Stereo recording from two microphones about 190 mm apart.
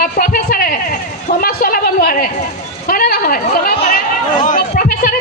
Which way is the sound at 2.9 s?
50° left (ahead or behind).